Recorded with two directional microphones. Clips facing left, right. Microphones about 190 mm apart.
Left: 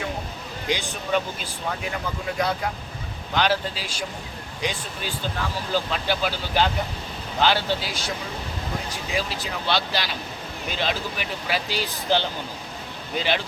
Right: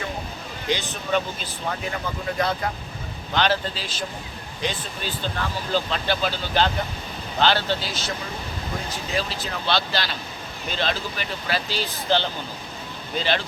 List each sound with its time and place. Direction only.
0.7 s speech: 10° left (ahead or behind)
9.1 s speech: 10° left (ahead or behind)